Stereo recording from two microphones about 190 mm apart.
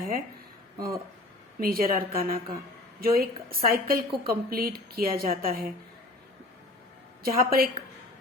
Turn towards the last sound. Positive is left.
turn(degrees=-50)  # may be behind; listen again after turning